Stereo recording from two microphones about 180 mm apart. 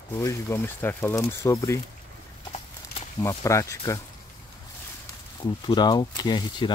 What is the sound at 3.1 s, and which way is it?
Speech, 15° left (ahead or behind).